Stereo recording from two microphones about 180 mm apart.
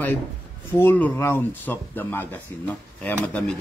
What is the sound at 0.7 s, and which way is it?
Speech, 15° left (ahead or behind).